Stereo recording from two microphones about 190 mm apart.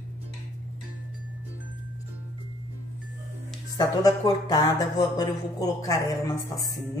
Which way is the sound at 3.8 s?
20° left (ahead or behind).